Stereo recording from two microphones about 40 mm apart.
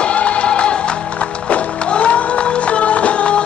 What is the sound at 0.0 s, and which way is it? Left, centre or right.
Music, left.